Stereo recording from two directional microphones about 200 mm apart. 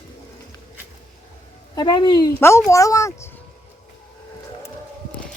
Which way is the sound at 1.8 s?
20° left (ahead or behind).